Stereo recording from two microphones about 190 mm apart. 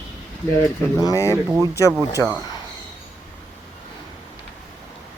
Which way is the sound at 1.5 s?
15° right (ahead or behind).